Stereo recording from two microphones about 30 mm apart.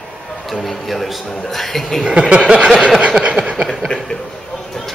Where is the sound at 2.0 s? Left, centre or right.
Right.